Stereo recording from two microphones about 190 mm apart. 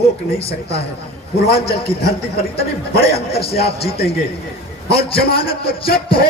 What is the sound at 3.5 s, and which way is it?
Speech, 55° left (ahead or behind).